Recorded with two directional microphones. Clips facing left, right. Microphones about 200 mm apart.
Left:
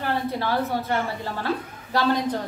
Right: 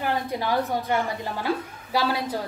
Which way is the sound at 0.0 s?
15° right (ahead or behind).